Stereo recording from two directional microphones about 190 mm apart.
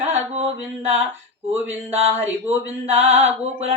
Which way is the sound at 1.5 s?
10° right (ahead or behind).